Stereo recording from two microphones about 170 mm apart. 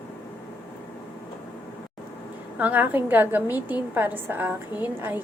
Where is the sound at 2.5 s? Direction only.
10° right (ahead or behind).